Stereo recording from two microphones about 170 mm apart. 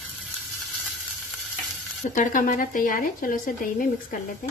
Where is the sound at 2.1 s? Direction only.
50° left (ahead or behind).